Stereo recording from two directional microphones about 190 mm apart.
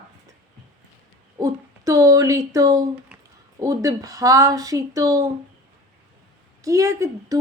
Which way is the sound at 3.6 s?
20° right (ahead or behind).